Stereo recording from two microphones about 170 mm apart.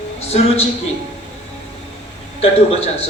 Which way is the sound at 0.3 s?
35° left (ahead or behind).